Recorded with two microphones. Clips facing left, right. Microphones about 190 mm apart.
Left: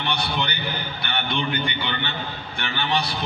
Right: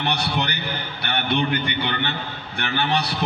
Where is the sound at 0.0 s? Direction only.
65° right (ahead or behind).